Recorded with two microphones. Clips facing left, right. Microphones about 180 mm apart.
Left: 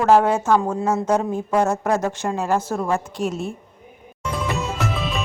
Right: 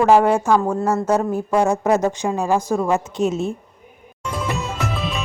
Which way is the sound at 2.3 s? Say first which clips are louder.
Right 2 dB; 15° right (ahead or behind).